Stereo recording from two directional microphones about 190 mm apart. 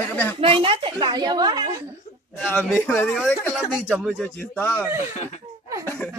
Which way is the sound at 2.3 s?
5° left (ahead or behind).